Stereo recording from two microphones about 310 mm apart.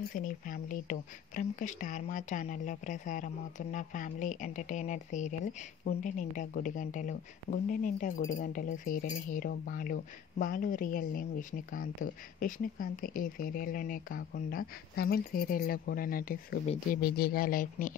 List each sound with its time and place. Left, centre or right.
0.1 s speech: left